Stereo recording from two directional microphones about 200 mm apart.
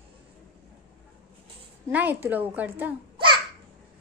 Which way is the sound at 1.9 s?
10° right (ahead or behind).